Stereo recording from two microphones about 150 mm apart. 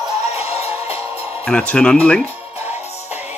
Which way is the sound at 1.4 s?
5° left (ahead or behind).